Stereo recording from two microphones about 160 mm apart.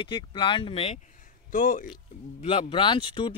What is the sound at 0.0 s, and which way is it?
Speech, 30° left (ahead or behind).